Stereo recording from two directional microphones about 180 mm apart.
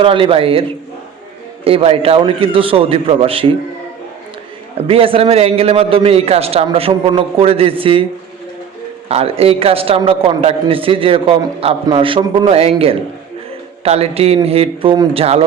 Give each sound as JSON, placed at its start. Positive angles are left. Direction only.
{"t": 0.0, "sound": "a man's voice", "side_deg": -30}
{"t": 1.6, "sound": "a man's voice", "side_deg": -30}
{"t": 4.9, "sound": "a man's voice", "side_deg": -30}
{"t": 9.0, "sound": "a man's voice", "side_deg": -35}